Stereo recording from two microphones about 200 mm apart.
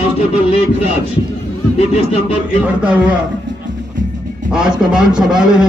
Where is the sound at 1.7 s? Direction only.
30° left (ahead or behind).